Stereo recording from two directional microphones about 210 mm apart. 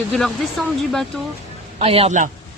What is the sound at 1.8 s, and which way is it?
Speech, 30° right (ahead or behind).